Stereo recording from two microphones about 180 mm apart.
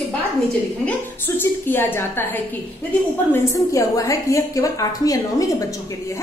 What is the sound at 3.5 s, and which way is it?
A woman's voice, 20° left (ahead or behind).